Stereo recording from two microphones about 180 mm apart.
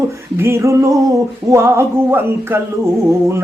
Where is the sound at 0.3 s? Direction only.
15° right (ahead or behind).